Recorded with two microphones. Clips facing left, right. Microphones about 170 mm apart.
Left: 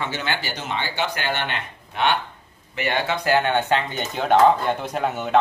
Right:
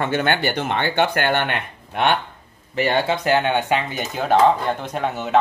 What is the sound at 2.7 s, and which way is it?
Speech, 35° right (ahead or behind).